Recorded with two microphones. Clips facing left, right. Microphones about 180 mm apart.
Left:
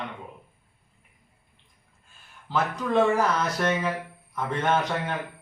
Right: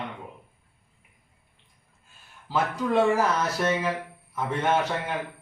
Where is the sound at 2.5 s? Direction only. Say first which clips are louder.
Even; 10° right (ahead or behind).